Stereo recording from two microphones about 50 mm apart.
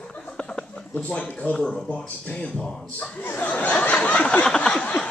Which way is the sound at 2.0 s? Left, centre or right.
Left.